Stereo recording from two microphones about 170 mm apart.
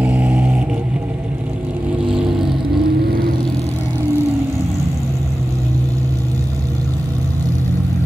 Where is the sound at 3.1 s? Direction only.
60° right (ahead or behind).